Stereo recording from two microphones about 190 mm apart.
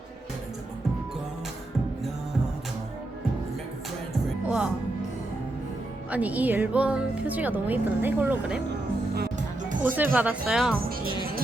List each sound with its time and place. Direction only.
4.4 s music: 5° right (ahead or behind)
6.1 s speech: 10° right (ahead or behind)
9.1 s music: 50° right (ahead or behind)
9.9 s speech: 10° right (ahead or behind)